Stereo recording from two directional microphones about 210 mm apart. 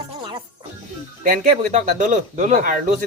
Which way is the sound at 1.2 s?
40° right (ahead or behind).